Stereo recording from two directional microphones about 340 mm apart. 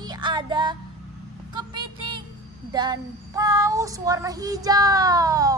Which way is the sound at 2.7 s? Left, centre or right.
Centre.